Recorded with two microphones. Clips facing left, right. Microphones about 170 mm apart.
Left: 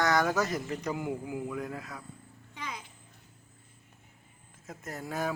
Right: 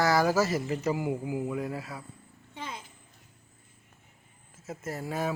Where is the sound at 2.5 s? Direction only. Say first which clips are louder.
Right 1 dB; 30° right (ahead or behind).